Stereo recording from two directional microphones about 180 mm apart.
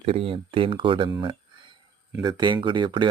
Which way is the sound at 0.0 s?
30° right (ahead or behind).